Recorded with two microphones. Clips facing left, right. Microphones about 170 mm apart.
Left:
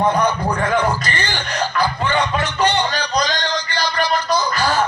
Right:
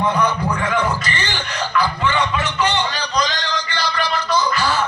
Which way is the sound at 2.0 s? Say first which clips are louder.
Left 1 dB; 45° left (ahead or behind).